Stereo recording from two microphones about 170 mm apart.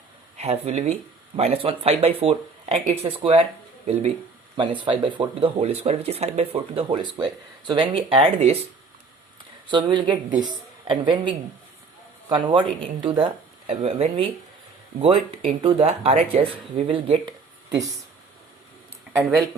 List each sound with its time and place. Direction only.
0.3 s speech: 40° right (ahead or behind)
4.5 s speech: 30° right (ahead or behind)
9.6 s speech: 25° right (ahead or behind)